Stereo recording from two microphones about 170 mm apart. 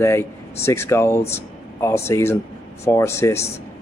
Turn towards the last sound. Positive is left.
turn(degrees=15)  # may be behind; listen again after turning